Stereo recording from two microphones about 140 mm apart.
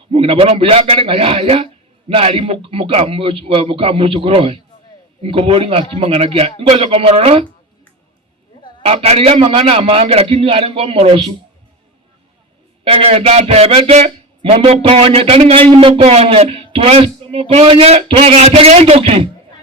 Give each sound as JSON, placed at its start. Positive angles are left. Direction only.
{"t": 0.1, "sound": "a man's voice", "side_deg": -40}
{"t": 8.8, "sound": "speech", "side_deg": -45}
{"t": 12.8, "sound": "a man's voice", "side_deg": -40}